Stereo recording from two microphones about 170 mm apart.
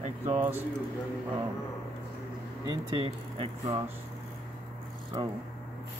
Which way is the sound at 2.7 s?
30° right (ahead or behind).